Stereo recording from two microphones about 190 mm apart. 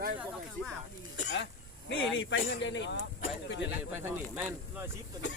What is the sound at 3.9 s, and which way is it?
Speech, 10° right (ahead or behind).